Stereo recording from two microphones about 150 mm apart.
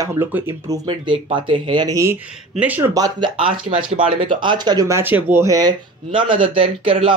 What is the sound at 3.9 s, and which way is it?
Speech, 35° right (ahead or behind).